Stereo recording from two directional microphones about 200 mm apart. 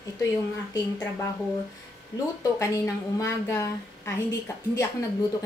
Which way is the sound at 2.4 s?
15° left (ahead or behind).